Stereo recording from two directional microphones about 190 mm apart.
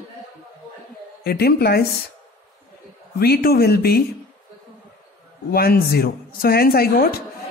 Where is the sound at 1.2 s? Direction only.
55° left (ahead or behind).